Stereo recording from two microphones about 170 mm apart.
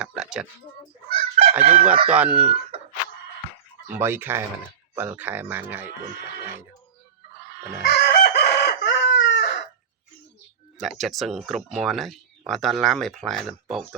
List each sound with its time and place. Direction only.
0.0 s oink: 5° right (ahead or behind)
1.1 s chicken: 35° right (ahead or behind)
2.0 s speech: 10° right (ahead or behind)
2.7 s a sound: 35° right (ahead or behind)
3.9 s speech: 10° right (ahead or behind)
7.9 s chicken: 70° left (ahead or behind); by 9.6 s 90° left
10.8 s speech: centre (ahead or behind)